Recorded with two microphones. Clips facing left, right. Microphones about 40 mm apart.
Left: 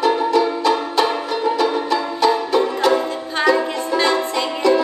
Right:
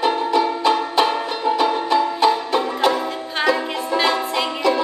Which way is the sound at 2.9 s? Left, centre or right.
Centre.